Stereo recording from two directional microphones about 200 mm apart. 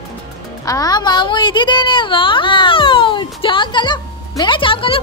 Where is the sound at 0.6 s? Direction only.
20° left (ahead or behind).